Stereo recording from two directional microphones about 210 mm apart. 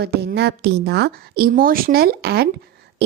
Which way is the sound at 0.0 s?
50° right (ahead or behind).